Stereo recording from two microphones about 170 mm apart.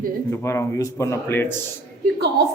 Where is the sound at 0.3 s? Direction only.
15° left (ahead or behind).